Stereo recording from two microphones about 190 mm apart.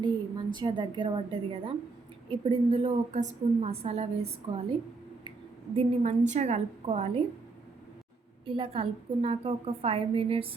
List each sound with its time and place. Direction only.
0.0 s a woman's voice: 25° right (ahead or behind)
5.7 s a woman's voice: 35° right (ahead or behind)
8.4 s a woman's voice: 25° right (ahead or behind)